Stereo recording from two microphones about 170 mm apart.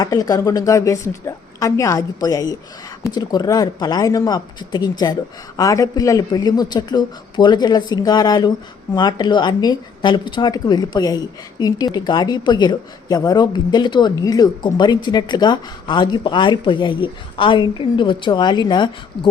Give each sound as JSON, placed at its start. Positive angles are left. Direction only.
{"t": 0.0, "sound": "a woman's voice", "side_deg": 20}